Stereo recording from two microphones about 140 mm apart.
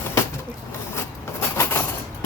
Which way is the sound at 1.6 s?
15° left (ahead or behind).